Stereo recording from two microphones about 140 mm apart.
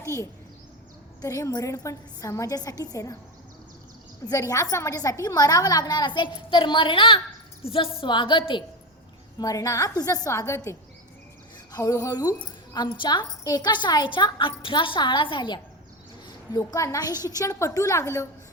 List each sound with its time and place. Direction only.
0.0 s a child's voice: 20° left (ahead or behind)
4.3 s a woman's voice: 25° left (ahead or behind)
9.4 s a woman's voice: 25° left (ahead or behind)